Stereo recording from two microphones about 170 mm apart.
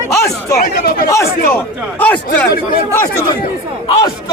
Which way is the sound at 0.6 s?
65° left (ahead or behind).